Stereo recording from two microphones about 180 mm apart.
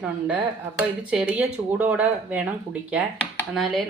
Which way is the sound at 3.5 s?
Centre (ahead or behind).